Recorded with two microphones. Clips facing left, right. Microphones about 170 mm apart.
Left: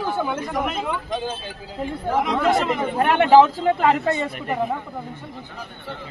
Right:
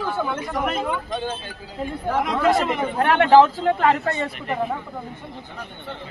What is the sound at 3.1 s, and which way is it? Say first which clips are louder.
Speech: even; 15° left (ahead or behind).